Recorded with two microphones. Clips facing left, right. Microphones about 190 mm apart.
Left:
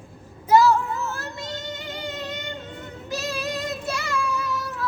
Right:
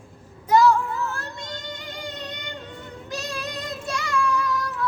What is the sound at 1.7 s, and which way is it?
Music, 5° left (ahead or behind).